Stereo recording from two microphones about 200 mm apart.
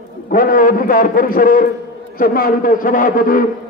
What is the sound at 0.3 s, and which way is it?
A man's voice, 45° left (ahead or behind).